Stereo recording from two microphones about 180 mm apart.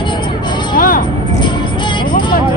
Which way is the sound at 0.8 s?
50° left (ahead or behind).